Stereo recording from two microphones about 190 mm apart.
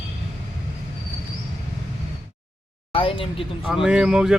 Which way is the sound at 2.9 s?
30° left (ahead or behind).